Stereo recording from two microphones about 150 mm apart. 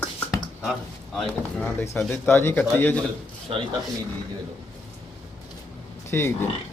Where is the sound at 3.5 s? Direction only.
35° right (ahead or behind).